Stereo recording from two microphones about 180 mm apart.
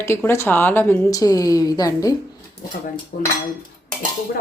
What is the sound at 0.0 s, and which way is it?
A woman's voice, 15° left (ahead or behind).